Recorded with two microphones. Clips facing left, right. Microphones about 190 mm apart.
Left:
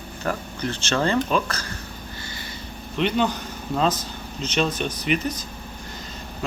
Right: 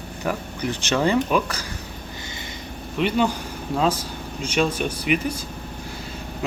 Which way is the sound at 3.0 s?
10° right (ahead or behind).